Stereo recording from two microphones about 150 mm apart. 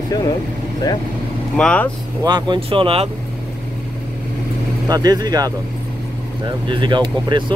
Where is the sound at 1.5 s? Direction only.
10° left (ahead or behind).